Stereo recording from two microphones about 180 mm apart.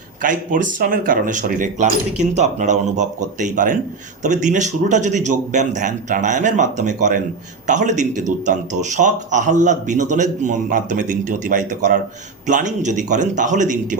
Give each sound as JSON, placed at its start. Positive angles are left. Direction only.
{"t": 0.2, "sound": "speech", "side_deg": -45}